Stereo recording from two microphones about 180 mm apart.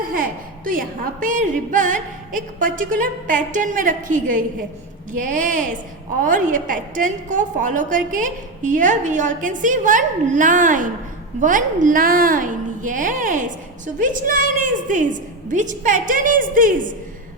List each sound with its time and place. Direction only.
0.0 s a woman's voice: 50° right (ahead or behind)